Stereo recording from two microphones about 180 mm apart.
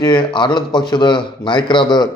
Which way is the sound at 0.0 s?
25° left (ahead or behind).